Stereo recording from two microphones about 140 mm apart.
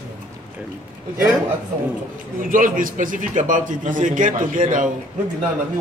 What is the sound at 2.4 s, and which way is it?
A man's voice, 75° right (ahead or behind).